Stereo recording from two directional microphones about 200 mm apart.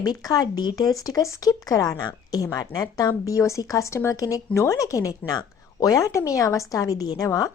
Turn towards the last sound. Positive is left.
turn(degrees=15)  # may be behind; listen again after turning